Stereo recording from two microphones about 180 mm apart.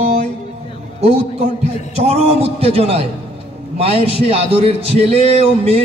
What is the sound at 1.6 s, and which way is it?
A man's voice, 35° right (ahead or behind).